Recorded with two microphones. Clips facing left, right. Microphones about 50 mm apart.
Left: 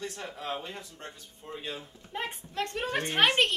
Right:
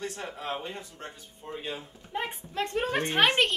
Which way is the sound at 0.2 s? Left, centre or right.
Right.